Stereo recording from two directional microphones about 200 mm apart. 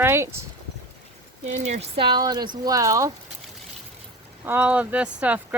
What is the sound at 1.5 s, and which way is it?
Speech, 35° right (ahead or behind).